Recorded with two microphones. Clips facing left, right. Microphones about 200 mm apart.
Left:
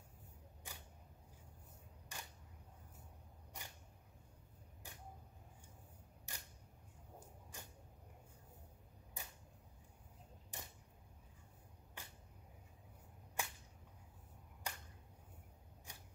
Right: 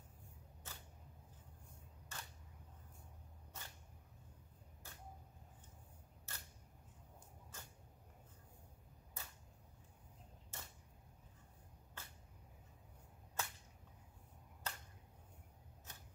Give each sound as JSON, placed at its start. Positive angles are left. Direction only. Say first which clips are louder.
{"t": 0.7, "sound": "single-lens reflex camera", "louder": "left 1 dB", "side_deg": 15}
{"t": 2.1, "sound": "single-lens reflex camera", "louder": "even", "side_deg": 15}
{"t": 3.6, "sound": "cat", "louder": "left 1 dB", "side_deg": 15}
{"t": 4.8, "sound": "a sound", "louder": "left 2 dB", "side_deg": 15}
{"t": 6.3, "sound": "camera", "louder": "left 1 dB", "side_deg": 15}
{"t": 7.5, "sound": "dog", "louder": "left 2 dB", "side_deg": 15}
{"t": 9.2, "sound": "a sound", "louder": "left 2 dB", "side_deg": 15}
{"t": 10.5, "sound": "a sound", "louder": "left 2 dB", "side_deg": 15}
{"t": 12.0, "sound": "a sound", "louder": "left 1 dB", "side_deg": 15}
{"t": 13.4, "sound": "whip", "louder": "even", "side_deg": 15}
{"t": 14.7, "sound": "finger snapping", "louder": "even", "side_deg": 15}
{"t": 15.9, "sound": "scissors", "louder": "left 1 dB", "side_deg": 15}